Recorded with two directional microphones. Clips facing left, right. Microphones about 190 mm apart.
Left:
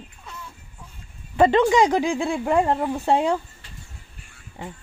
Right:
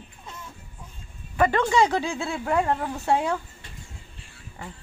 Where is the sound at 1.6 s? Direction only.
15° left (ahead or behind).